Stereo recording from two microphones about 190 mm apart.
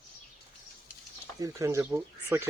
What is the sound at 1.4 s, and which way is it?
Speech, 15° right (ahead or behind).